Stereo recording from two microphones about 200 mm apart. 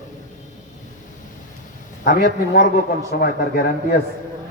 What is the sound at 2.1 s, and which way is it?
A man's voice, 50° left (ahead or behind).